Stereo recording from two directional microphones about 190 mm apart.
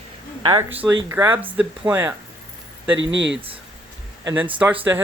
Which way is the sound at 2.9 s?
70° right (ahead or behind).